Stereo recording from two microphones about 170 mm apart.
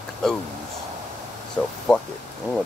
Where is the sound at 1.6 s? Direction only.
15° left (ahead or behind).